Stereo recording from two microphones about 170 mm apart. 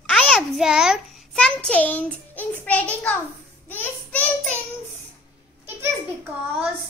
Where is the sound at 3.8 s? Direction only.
10° left (ahead or behind).